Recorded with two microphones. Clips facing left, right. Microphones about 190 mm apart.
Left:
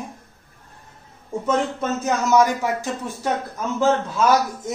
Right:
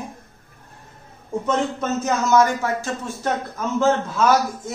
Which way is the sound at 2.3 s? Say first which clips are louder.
Even; 15° left (ahead or behind).